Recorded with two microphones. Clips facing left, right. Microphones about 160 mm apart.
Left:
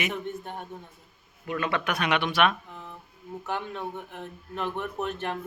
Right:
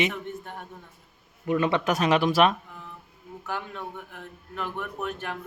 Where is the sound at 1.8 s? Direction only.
35° right (ahead or behind).